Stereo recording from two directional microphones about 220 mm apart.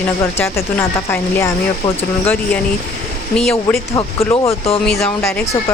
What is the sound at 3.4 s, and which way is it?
Speech, 5° left (ahead or behind).